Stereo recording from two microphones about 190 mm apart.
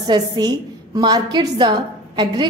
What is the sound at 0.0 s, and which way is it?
A woman's voice, 20° right (ahead or behind).